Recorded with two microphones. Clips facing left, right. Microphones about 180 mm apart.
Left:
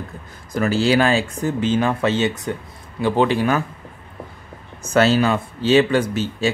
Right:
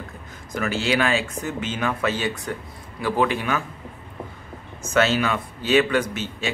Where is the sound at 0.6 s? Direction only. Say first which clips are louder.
Left 6 dB; 35° left (ahead or behind).